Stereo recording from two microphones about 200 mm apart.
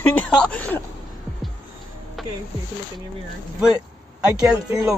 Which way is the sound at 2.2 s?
Centre (ahead or behind).